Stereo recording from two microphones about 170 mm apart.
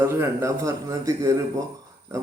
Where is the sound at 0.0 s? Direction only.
15° right (ahead or behind).